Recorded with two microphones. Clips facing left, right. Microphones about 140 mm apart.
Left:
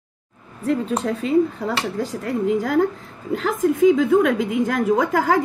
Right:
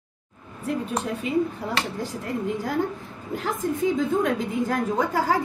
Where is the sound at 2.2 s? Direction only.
90° left.